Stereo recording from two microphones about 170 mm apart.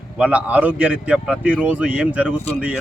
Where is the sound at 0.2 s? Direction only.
5° right (ahead or behind).